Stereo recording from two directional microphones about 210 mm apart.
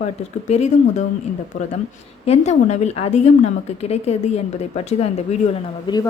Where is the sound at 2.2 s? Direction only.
30° left (ahead or behind).